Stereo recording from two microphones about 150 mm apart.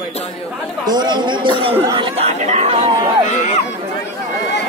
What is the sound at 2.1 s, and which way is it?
Chatter, 45° right (ahead or behind).